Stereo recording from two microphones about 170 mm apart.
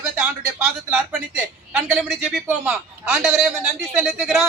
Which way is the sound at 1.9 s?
Centre (ahead or behind).